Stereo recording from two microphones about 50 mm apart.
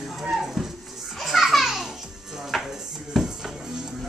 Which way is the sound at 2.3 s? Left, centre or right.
Centre.